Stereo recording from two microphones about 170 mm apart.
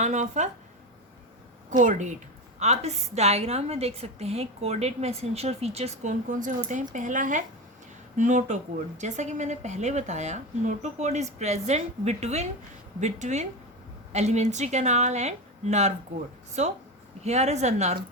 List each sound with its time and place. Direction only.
0.0 s speech: 45° right (ahead or behind)
1.7 s a woman's voice: 50° right (ahead or behind)